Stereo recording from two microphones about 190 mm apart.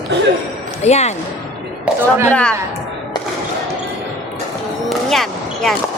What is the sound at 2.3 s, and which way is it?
Speech, 5° left (ahead or behind).